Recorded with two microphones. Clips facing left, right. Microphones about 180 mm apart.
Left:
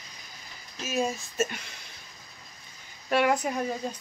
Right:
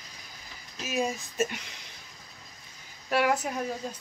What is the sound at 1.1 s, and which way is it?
Speech, 15° right (ahead or behind).